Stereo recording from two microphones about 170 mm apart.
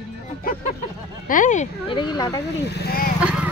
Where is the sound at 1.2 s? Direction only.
50° left (ahead or behind).